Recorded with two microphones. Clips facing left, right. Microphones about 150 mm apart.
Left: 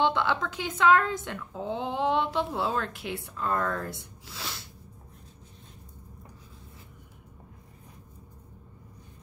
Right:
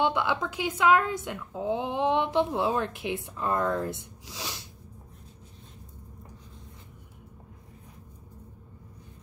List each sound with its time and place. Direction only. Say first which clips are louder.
0.0 s speech: even; 10° right (ahead or behind)